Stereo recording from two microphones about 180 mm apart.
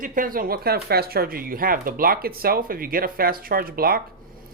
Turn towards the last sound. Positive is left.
turn(degrees=-55)  # may be behind; listen again after turning